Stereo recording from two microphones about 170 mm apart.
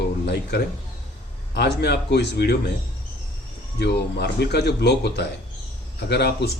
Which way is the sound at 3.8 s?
75° left (ahead or behind).